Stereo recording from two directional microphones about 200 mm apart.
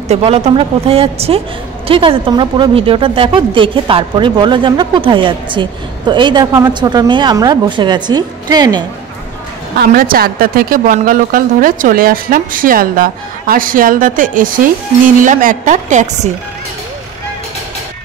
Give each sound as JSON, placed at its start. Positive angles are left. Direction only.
{"t": 0.1, "sound": "a woman's voice", "side_deg": -30}
{"t": 9.8, "sound": "a woman's voice", "side_deg": -45}